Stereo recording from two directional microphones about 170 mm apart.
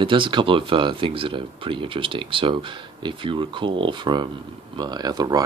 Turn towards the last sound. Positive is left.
turn(degrees=-25)  # may be behind; listen again after turning